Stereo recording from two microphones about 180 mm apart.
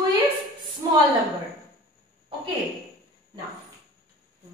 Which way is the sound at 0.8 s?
20° right (ahead or behind).